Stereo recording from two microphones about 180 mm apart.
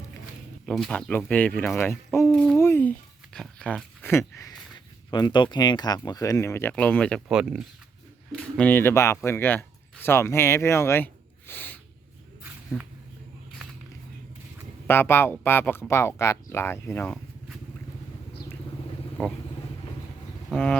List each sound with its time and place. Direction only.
0.6 s speech: centre (ahead or behind)
2.6 s speech: 15° left (ahead or behind)
14.8 s speech: 10° left (ahead or behind)
19.2 s speech: 10° left (ahead or behind)
20.5 s a sound: 5° left (ahead or behind)